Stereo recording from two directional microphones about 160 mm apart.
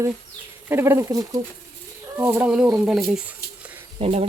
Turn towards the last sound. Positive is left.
turn(degrees=-40)  # may be behind; listen again after turning